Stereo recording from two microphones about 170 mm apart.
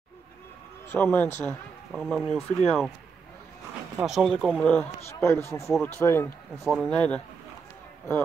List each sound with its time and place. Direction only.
0.8 s speech: 15° left (ahead or behind)
1.9 s speech: centre (ahead or behind)
4.0 s speech: centre (ahead or behind); by 6.3 s 15° left (ahead or behind)
6.5 s speech: centre (ahead or behind)